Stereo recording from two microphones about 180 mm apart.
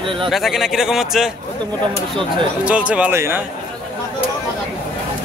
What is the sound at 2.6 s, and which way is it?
Speech, 5° right (ahead or behind).